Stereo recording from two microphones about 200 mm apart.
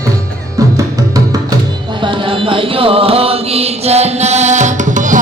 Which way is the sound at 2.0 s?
25° right (ahead or behind).